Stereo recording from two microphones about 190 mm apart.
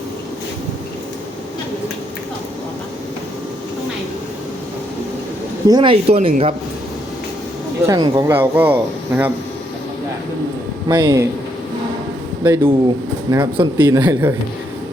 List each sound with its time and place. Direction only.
5.6 s speech: 25° right (ahead or behind)
7.9 s speech: 20° right (ahead or behind)
8.3 s speech: 10° right (ahead or behind)
10.8 s speech: 20° right (ahead or behind)
12.4 s speech: 10° right (ahead or behind)
13.3 s speech: 20° right (ahead or behind)